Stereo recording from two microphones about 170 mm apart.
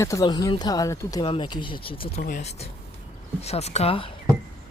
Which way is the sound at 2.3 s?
50° left (ahead or behind).